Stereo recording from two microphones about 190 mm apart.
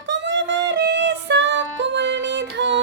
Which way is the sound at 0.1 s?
70° right (ahead or behind).